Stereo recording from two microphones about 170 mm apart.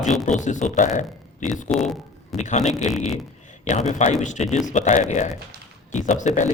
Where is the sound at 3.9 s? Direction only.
45° left (ahead or behind).